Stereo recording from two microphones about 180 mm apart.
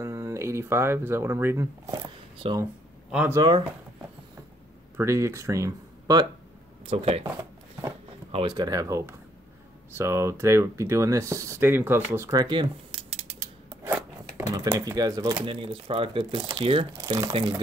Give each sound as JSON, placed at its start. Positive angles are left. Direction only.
{"t": 0.0, "sound": "a sound", "side_deg": -15}
{"t": 3.1, "sound": "speech", "side_deg": -5}
{"t": 3.3, "sound": "speech", "side_deg": -25}
{"t": 4.9, "sound": "speech", "side_deg": -15}
{"t": 6.9, "sound": "speech", "side_deg": -35}
{"t": 7.2, "sound": "a sound", "side_deg": -15}
{"t": 8.3, "sound": "speech", "side_deg": -30}
{"t": 12.4, "sound": "speech", "side_deg": -25}
{"t": 13.3, "sound": "scissors", "side_deg": -10}
{"t": 14.9, "sound": "speech", "side_deg": -20}
{"t": 15.5, "sound": "speech", "side_deg": -30}